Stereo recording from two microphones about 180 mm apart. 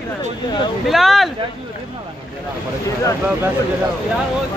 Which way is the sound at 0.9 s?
Centre (ahead or behind).